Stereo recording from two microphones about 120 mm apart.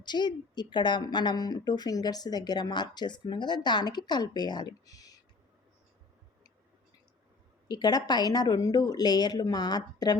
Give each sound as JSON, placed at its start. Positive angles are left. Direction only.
{"t": 0.0, "sound": "a woman's voice", "side_deg": 40}
{"t": 7.7, "sound": "a woman's voice", "side_deg": 35}